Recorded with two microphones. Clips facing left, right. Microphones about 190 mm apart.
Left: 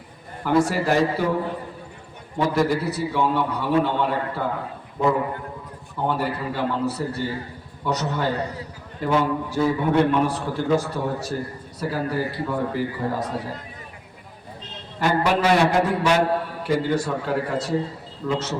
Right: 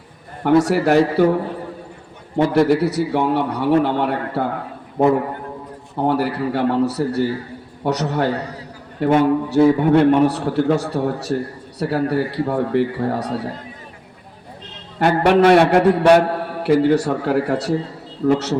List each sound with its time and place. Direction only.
0.4 s a man's voice: 70° right (ahead or behind)
2.4 s a man's voice: 70° right (ahead or behind)
14.9 s a man's voice: 65° right (ahead or behind)